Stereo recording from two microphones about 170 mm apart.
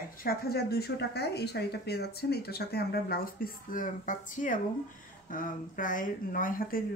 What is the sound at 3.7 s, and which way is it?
Speech, 50° left (ahead or behind).